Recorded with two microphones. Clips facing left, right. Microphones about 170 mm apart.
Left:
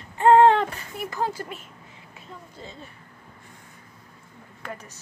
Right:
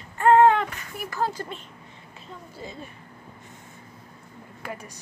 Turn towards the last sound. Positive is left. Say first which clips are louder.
# right 1 dB
turn(degrees=-10)  # may be behind; listen again after turning